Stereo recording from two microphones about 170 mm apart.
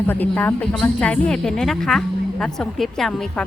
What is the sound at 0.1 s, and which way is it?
Speech, 10° left (ahead or behind).